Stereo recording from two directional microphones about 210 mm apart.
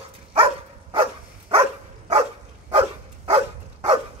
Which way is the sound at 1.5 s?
30° right (ahead or behind).